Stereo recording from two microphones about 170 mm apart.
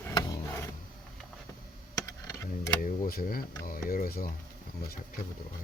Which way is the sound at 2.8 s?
55° left (ahead or behind).